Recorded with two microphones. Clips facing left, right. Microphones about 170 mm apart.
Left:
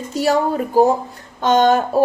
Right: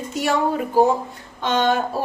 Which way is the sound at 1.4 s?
45° left (ahead or behind).